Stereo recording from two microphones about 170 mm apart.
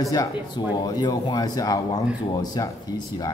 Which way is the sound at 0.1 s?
25° left (ahead or behind).